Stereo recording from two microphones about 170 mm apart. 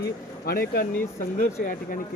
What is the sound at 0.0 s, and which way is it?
Speech, 60° left (ahead or behind).